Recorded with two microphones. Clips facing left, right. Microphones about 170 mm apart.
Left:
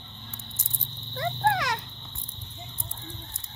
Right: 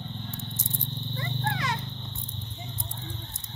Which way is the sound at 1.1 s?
80° left.